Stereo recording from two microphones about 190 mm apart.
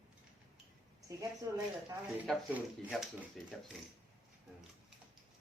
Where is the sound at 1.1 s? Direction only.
15° right (ahead or behind).